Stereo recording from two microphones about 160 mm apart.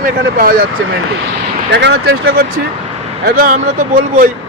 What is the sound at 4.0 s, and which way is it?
Speech, 55° right (ahead or behind).